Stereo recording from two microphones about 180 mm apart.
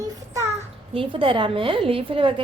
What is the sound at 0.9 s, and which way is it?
A woman's voice, 30° right (ahead or behind).